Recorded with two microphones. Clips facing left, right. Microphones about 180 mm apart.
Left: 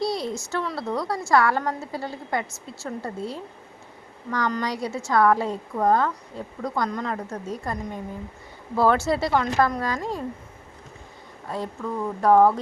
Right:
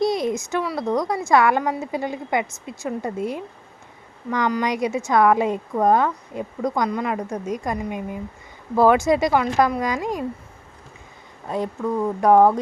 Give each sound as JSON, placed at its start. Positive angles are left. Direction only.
{"t": 0.0, "sound": "a woman's voice", "side_deg": -20}
{"t": 11.4, "sound": "speech", "side_deg": -20}